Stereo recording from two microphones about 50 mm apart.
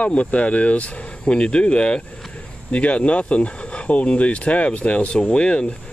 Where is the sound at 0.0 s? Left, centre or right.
Left.